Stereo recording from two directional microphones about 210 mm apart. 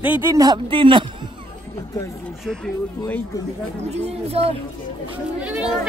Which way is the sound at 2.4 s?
5° left (ahead or behind).